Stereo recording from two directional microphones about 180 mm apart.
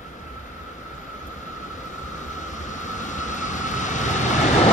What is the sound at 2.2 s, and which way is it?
Vehicle, 45° left (ahead or behind).